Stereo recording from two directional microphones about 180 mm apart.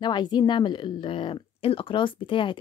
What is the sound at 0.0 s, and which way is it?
A woman's voice, 25° left (ahead or behind).